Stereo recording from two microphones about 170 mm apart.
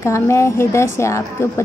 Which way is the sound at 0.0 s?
15° left (ahead or behind).